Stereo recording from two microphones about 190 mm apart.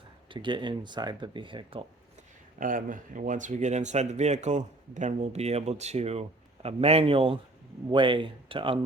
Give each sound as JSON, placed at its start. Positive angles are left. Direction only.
{"t": 0.3, "sound": "speech", "side_deg": -25}
{"t": 2.6, "sound": "speech", "side_deg": -45}